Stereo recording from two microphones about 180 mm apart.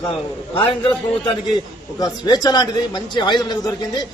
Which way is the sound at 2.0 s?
25° left (ahead or behind).